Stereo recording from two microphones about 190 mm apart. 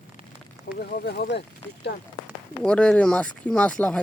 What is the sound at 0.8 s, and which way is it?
Speech, 60° left (ahead or behind).